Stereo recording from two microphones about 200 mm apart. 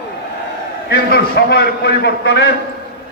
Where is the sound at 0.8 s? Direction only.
55° left (ahead or behind).